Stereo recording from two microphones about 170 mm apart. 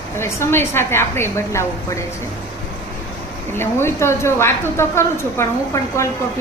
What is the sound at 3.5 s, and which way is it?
A woman's voice, 15° left (ahead or behind).